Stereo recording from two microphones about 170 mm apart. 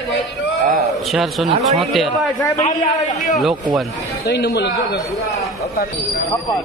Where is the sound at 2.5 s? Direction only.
45° left (ahead or behind).